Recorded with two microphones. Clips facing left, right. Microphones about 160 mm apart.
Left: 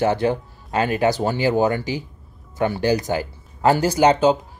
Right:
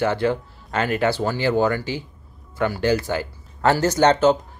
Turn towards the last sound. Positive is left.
turn(degrees=10)  # may be behind; listen again after turning